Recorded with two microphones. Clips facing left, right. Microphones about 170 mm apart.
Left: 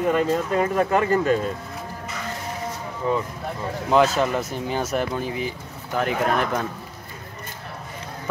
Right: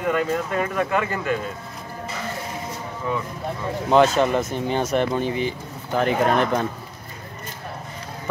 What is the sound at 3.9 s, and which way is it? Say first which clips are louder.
Speech: right 2 dB; 5° left (ahead or behind).